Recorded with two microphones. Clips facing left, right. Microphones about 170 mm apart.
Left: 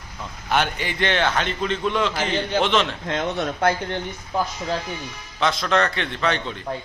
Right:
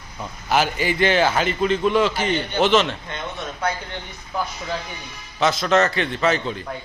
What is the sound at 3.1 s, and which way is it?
Speech, 85° left.